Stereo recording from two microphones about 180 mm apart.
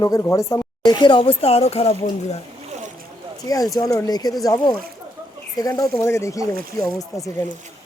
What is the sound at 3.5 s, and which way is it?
A woman's voice, 20° left (ahead or behind).